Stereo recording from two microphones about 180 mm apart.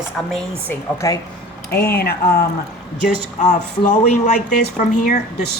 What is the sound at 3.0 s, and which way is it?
Speech, 45° left (ahead or behind).